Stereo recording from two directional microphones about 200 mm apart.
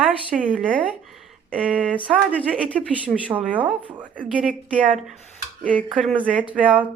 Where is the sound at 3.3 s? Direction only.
5° right (ahead or behind).